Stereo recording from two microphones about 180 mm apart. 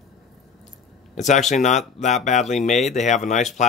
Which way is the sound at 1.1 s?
40° left (ahead or behind).